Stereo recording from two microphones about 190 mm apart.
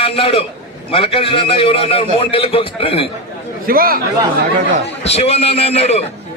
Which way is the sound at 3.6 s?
50° right (ahead or behind).